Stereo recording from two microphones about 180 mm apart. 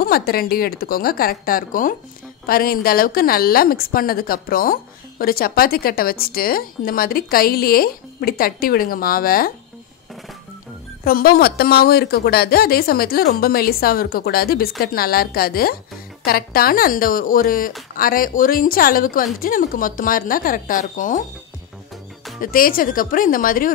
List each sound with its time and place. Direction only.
0.0 s speech: 55° left (ahead or behind)
11.1 s speech: 55° left (ahead or behind)
22.4 s speech: 50° left (ahead or behind)